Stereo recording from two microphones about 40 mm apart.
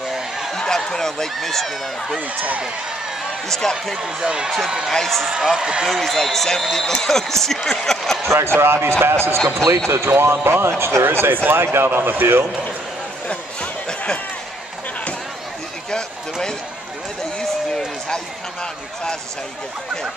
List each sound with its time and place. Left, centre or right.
0.5 s a sound: centre
1.3 s speech: centre
2.1 s speech: right
3.4 s a man's voice: centre
3.9 s speech: centre
4.9 s a man's voice: centre
5.6 s speech: right
5.9 s a man's voice: centre
8.4 s speech: right
9.0 s speech: right
9.4 s a man's voice: centre
9.8 s speech: right
13.3 s a sound: left
17.4 s run: centre